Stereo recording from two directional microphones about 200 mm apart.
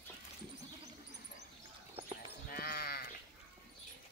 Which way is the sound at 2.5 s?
50° left (ahead or behind).